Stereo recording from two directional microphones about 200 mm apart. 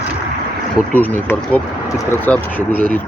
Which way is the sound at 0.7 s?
10° left (ahead or behind).